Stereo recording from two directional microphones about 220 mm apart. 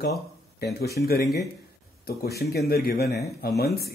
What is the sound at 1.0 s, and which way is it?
Speech, 45° left (ahead or behind).